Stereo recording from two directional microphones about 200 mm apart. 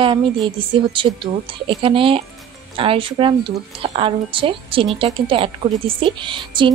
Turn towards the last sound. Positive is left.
turn(degrees=-25)  # may be behind; listen again after turning